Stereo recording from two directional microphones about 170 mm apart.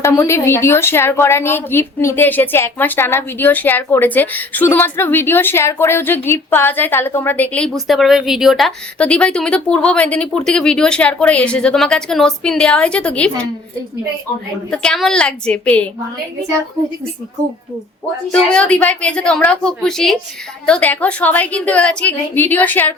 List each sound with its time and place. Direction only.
0.0 s a woman's voice: 15° left (ahead or behind)
14.7 s a woman's voice: 5° left (ahead or behind)
18.3 s a woman's voice: 5° left (ahead or behind)